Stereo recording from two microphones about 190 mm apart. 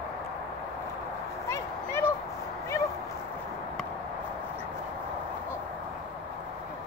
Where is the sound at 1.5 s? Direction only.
15° left (ahead or behind).